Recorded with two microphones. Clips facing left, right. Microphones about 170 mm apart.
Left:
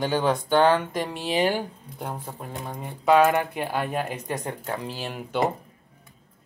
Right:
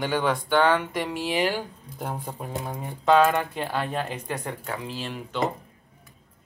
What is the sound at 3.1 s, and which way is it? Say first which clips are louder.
Speech: left 1 dB; 15° left (ahead or behind).